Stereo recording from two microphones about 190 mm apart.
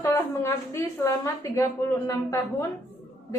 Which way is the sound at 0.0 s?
15° left (ahead or behind).